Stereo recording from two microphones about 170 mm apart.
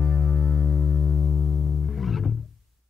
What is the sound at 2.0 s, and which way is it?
Music, centre (ahead or behind).